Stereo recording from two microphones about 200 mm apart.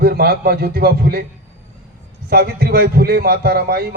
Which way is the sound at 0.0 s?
50° right (ahead or behind).